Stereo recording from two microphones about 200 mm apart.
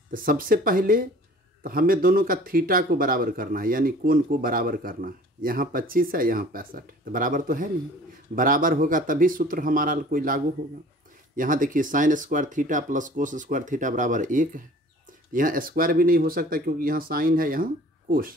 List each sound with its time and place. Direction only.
0.1 s speech: 45° right (ahead or behind)